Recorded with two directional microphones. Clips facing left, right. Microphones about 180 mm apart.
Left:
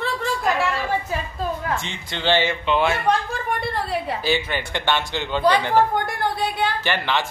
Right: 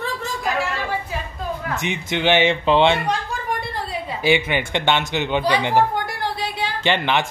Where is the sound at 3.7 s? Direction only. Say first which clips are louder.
Left 3 dB; 65° left (ahead or behind).